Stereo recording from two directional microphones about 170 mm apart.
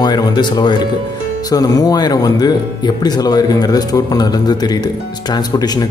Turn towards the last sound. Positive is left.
turn(degrees=25)  # may be behind; listen again after turning